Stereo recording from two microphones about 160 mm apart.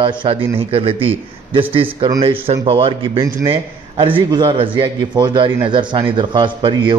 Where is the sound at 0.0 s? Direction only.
30° right (ahead or behind).